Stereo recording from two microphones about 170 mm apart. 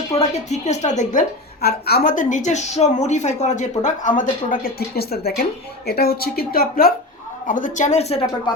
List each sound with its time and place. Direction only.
0.2 s a woman's voice: 40° left (ahead or behind)
1.6 s a woman's voice: 65° left (ahead or behind)
7.4 s a woman's voice: 50° left (ahead or behind)